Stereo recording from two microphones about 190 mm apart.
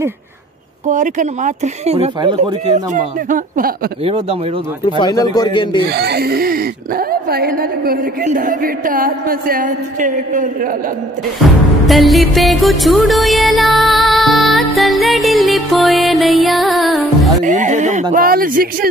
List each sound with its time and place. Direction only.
0.8 s speech: 40° right (ahead or behind)
4.0 s speech: 30° right (ahead or behind)
4.8 s speech: 20° left (ahead or behind)
5.9 s speech: 60° right (ahead or behind)
11.8 s music: centre (ahead or behind)
17.5 s speech: 40° right (ahead or behind)
18.1 s speech: 50° right (ahead or behind)